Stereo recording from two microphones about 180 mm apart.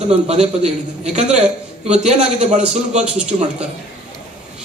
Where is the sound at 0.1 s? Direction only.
35° right (ahead or behind).